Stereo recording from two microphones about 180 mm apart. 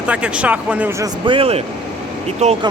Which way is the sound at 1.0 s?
30° right (ahead or behind).